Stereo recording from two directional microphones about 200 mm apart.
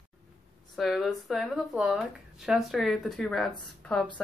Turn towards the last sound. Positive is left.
turn(degrees=0)  # may be behind; listen again after turning